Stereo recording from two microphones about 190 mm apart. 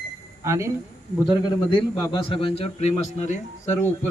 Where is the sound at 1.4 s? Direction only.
20° left (ahead or behind); by 3.4 s 40° left (ahead or behind).